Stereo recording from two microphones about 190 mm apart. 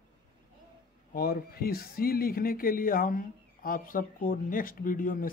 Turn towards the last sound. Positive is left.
turn(degrees=45)  # may be behind; listen again after turning